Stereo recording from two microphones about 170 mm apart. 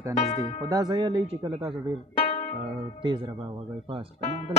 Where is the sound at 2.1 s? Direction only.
40° left (ahead or behind).